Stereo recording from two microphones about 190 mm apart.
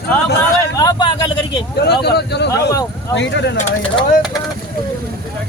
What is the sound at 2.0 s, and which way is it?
Speech, 60° left (ahead or behind).